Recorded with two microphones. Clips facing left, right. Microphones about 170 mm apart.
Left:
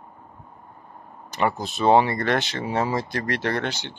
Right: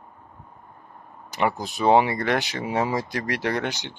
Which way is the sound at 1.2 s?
15° right (ahead or behind).